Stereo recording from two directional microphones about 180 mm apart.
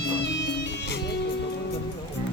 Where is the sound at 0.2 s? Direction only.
80° left.